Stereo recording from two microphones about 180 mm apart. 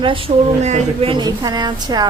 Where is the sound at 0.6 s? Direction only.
40° right (ahead or behind).